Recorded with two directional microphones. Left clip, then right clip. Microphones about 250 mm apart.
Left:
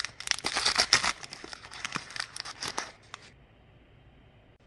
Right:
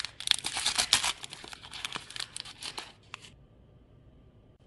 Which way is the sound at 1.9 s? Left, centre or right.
Centre.